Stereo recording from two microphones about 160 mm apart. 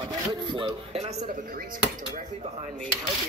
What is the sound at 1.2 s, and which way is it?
Speech, 60° right (ahead or behind).